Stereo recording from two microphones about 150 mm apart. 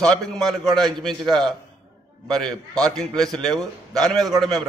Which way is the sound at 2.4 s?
5° left (ahead or behind).